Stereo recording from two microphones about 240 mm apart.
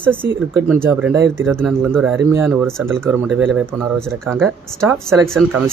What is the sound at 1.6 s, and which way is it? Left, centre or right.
Speech, centre.